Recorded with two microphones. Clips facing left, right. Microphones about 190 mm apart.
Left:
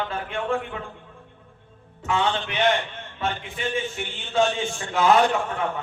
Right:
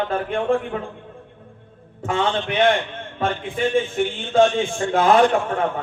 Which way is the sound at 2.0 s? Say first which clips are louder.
Right 3 dB; 50° right (ahead or behind).